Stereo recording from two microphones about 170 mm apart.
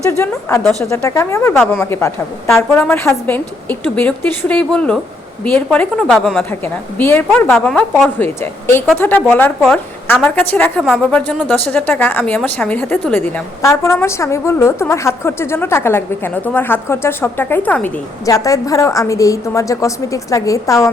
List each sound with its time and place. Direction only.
0.9 s a woman's voice: 15° left (ahead or behind)
8.2 s a woman's voice: 15° left (ahead or behind)
18.3 s a woman's voice: 20° left (ahead or behind)